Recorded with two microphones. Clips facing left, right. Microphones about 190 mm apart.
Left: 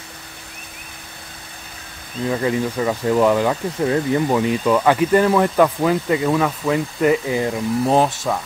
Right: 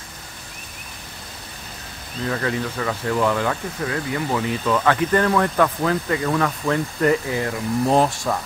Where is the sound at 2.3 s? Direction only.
15° left (ahead or behind).